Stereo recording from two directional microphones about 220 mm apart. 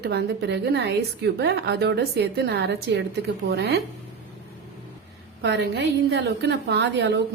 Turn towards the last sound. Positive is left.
turn(degrees=-50)  # may be behind; listen again after turning